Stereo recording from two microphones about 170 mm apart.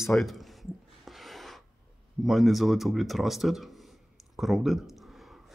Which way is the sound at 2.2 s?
Centre (ahead or behind).